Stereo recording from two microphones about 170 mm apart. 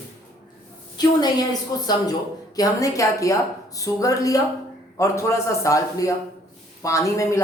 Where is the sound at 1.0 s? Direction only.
25° left (ahead or behind).